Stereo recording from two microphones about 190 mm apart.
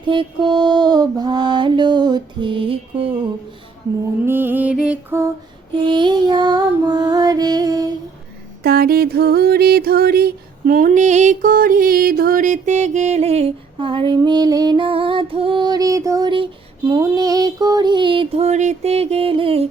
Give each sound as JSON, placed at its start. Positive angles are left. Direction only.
{"t": 0.0, "sound": "mantra", "side_deg": -25}
{"t": 4.3, "sound": "music", "side_deg": -10}
{"t": 5.7, "sound": "music", "side_deg": -25}
{"t": 8.6, "sound": "music", "side_deg": -55}
{"t": 16.9, "sound": "a sound", "side_deg": -20}